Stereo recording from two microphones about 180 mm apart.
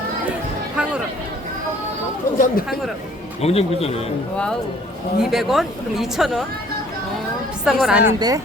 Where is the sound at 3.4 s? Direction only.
35° left (ahead or behind).